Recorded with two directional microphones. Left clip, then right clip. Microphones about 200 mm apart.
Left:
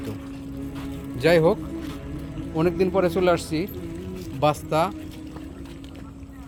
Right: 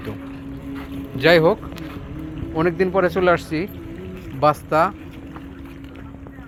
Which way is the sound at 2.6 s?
10° left (ahead or behind).